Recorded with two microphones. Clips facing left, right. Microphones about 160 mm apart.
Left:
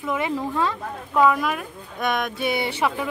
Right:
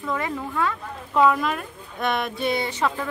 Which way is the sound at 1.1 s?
Centre (ahead or behind).